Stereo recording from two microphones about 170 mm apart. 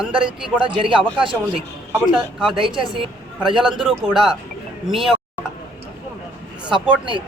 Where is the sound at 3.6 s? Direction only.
5° right (ahead or behind).